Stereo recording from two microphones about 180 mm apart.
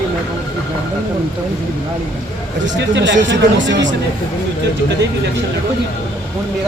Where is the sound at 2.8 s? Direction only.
90° right.